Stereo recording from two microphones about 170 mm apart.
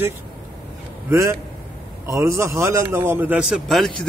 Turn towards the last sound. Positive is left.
turn(degrees=0)  # may be behind; listen again after turning